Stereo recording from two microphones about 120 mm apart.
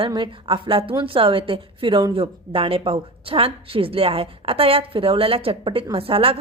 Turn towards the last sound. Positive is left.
turn(degrees=-55)  # may be behind; listen again after turning